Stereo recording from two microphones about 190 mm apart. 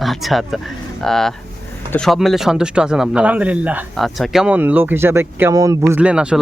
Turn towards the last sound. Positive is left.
turn(degrees=-5)  # may be behind; listen again after turning